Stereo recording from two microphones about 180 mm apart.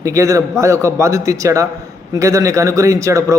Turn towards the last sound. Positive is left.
turn(degrees=-15)  # may be behind; listen again after turning